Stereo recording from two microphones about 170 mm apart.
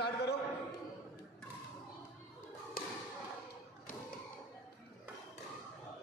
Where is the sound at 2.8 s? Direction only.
60° left (ahead or behind).